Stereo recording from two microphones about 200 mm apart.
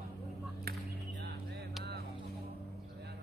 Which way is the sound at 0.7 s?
55° right (ahead or behind).